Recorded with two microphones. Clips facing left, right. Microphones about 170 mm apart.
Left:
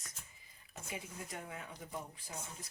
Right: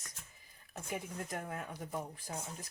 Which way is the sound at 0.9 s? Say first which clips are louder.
Right 5 dB; 55° right (ahead or behind).